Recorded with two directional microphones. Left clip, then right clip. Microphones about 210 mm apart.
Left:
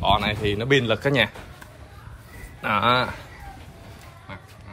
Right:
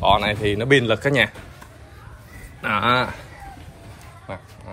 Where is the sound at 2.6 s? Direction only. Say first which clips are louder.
Right 1 dB; 20° left (ahead or behind).